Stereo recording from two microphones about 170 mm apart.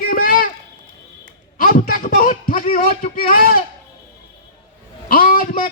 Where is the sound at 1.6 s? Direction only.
60° left (ahead or behind).